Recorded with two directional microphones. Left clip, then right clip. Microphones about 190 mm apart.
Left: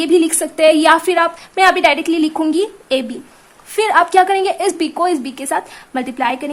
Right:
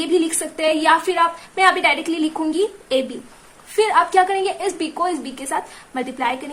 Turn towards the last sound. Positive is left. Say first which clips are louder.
# left 4 dB
turn(degrees=45)  # may be behind; listen again after turning